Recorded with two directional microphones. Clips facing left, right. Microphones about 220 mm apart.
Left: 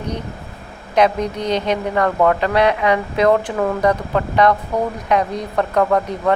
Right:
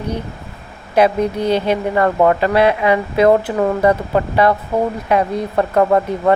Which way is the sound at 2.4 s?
5° right (ahead or behind).